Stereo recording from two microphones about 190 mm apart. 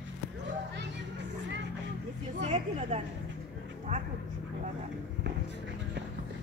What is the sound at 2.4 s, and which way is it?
A woman's voice, 30° right (ahead or behind).